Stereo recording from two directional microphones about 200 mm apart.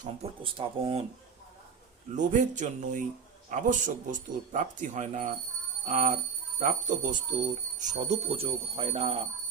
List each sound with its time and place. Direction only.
0.0 s speech: 30° right (ahead or behind)
2.1 s speech: 40° right (ahead or behind)